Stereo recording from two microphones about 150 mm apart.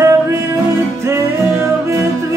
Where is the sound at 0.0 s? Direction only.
20° right (ahead or behind).